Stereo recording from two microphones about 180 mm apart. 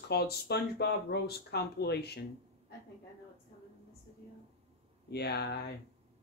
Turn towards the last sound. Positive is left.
turn(degrees=65)  # may be behind; listen again after turning